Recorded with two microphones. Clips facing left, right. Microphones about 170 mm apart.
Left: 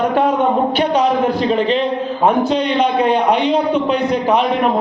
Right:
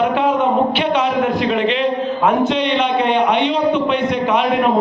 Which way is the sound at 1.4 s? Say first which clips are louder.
Left 1 dB; 35° left (ahead or behind).